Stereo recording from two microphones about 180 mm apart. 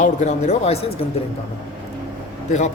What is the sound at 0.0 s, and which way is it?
Speech, 40° left (ahead or behind).